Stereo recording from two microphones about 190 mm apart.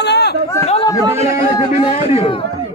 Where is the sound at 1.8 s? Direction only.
30° left (ahead or behind).